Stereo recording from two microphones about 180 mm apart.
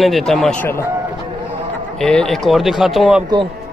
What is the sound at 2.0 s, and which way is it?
Speech, 5° left (ahead or behind).